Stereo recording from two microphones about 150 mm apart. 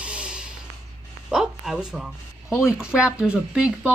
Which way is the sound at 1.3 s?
5° right (ahead or behind).